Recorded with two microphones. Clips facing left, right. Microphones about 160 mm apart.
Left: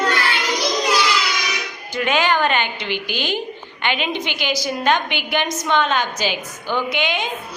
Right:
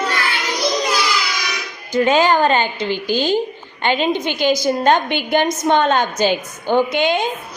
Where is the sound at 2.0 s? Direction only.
35° right (ahead or behind).